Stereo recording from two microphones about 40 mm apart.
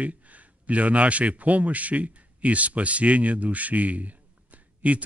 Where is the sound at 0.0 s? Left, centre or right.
Right.